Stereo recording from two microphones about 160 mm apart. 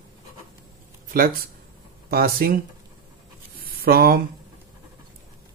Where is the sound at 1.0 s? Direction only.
60° right (ahead or behind).